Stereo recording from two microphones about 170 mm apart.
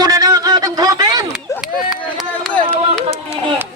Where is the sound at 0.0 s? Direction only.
20° right (ahead or behind).